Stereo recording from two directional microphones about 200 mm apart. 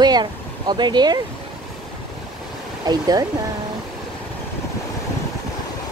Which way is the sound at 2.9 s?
20° right (ahead or behind).